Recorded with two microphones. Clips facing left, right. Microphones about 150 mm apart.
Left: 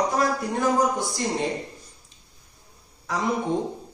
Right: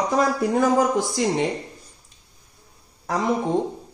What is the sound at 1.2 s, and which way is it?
Speech, 90° right.